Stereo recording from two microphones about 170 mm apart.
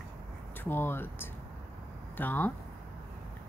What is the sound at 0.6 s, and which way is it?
Speech, 15° left (ahead or behind).